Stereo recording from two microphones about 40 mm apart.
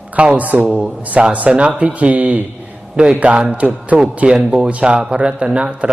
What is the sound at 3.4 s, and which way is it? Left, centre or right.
Speech, right.